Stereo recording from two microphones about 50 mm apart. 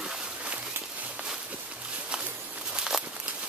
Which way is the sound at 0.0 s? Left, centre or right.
Centre.